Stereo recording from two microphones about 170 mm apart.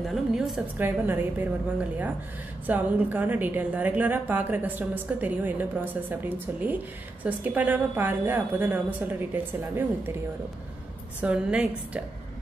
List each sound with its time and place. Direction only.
0.0 s a woman's voice: centre (ahead or behind)
0.7 s a woman's voice: 10° right (ahead or behind)
11.1 s a woman's voice: 5° right (ahead or behind)